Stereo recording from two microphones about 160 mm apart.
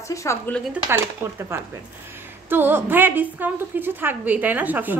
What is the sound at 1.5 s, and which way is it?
A woman's voice, 15° right (ahead or behind).